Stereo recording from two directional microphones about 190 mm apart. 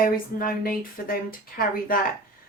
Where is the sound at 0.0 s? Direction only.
50° left (ahead or behind).